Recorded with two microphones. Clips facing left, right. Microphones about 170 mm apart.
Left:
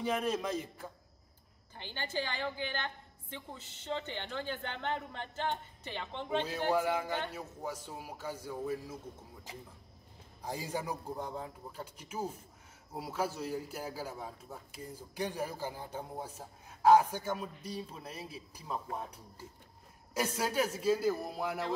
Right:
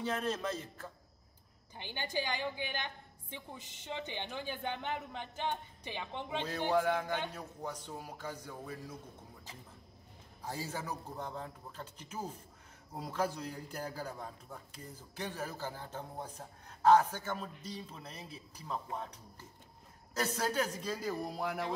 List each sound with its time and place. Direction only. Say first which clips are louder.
0.0 s a man's voice: left 2 dB; 10° left (ahead or behind)
1.8 s a woman's voice: even; 15° right (ahead or behind)
6.7 s a man's voice: right 1 dB; 10° left (ahead or behind)
10.4 s a man's voice: left 3 dB; 15° left (ahead or behind)